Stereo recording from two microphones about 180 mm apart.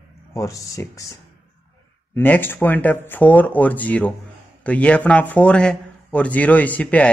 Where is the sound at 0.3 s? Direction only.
15° left (ahead or behind).